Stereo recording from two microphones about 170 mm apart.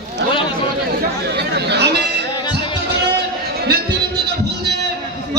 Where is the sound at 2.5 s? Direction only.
80° right.